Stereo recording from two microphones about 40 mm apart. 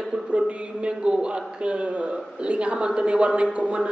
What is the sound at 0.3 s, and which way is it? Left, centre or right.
A man's voice, right.